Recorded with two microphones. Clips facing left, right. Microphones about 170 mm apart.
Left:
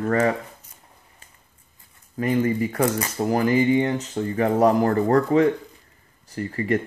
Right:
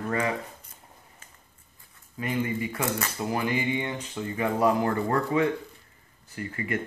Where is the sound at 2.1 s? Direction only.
40° left (ahead or behind).